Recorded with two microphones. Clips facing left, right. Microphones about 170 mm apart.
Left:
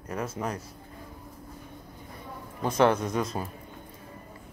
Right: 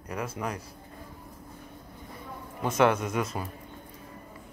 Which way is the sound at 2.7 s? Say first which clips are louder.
Left 1 dB; 30° left (ahead or behind).